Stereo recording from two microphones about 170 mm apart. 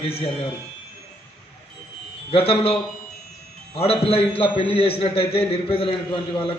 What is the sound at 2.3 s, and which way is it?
Speech, 35° left (ahead or behind).